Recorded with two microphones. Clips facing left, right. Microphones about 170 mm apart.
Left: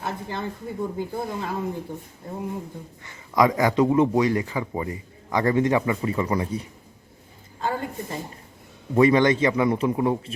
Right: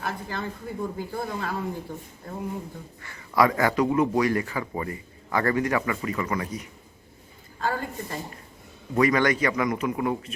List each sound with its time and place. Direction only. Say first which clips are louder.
0.0 s speech: left 2 dB; 20° left (ahead or behind)
3.0 s speech: left 1 dB; 20° left (ahead or behind)
7.6 s speech: left 1 dB; 20° left (ahead or behind)